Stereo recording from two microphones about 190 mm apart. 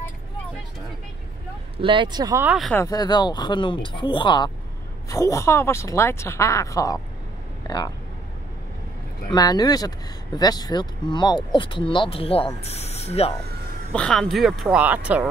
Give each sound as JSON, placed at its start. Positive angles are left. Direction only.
{"t": 1.8, "sound": "speech", "side_deg": -25}
{"t": 2.4, "sound": "speech", "side_deg": -5}
{"t": 2.7, "sound": "speech", "side_deg": 15}
{"t": 9.3, "sound": "speech", "side_deg": 20}
{"t": 13.9, "sound": "speech", "side_deg": 5}